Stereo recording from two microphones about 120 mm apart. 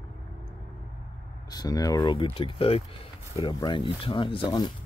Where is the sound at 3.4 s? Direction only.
40° left (ahead or behind).